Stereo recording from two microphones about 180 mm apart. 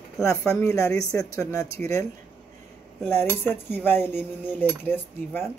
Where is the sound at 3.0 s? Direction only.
10° left (ahead or behind).